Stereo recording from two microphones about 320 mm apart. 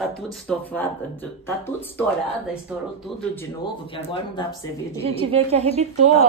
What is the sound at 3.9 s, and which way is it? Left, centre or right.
Speech, centre.